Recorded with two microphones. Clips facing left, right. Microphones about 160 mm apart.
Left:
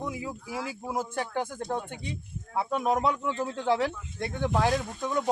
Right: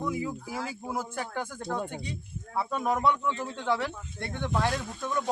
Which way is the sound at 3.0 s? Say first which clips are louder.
Right 1 dB; 35° left (ahead or behind).